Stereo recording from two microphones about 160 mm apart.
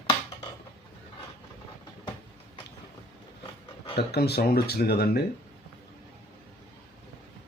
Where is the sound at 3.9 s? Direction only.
90° left.